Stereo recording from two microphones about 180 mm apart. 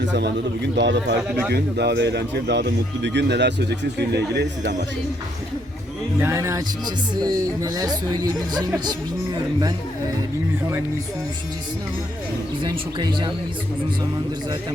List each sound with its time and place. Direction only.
0.0 s speech: 75° right (ahead or behind)
6.1 s speech: 15° right (ahead or behind)
12.6 s speech: 25° right (ahead or behind)